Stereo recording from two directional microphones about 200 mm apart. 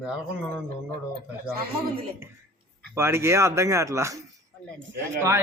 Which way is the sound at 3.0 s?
15° right (ahead or behind).